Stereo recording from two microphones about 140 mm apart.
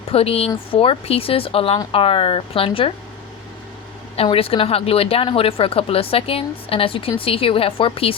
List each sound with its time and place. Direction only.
0.1 s a woman's voice: 45° left (ahead or behind)
4.2 s speech: 45° left (ahead or behind)